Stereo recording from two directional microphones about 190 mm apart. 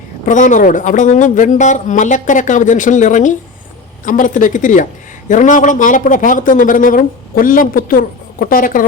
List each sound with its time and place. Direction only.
0.3 s speech: 40° left (ahead or behind)